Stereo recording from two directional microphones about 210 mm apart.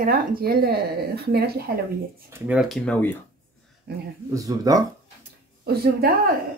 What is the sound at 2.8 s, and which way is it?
Speech, 10° left (ahead or behind).